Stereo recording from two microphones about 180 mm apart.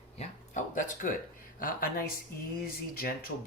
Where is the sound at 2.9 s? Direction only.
55° left (ahead or behind).